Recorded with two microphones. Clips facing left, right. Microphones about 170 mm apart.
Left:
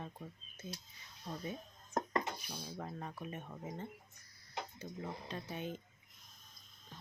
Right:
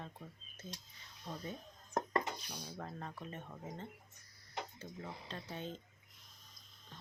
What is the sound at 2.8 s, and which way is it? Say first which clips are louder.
Speech: left 1 dB; 10° left (ahead or behind).